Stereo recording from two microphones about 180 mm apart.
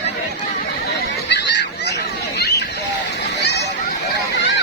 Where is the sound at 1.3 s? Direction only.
70° left (ahead or behind).